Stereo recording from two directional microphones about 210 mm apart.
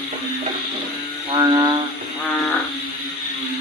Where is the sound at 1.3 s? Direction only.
20° right (ahead or behind).